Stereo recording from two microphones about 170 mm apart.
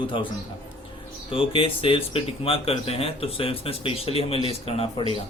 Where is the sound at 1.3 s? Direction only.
30° left (ahead or behind).